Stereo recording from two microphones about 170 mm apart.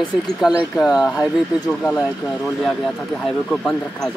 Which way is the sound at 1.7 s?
5° left (ahead or behind).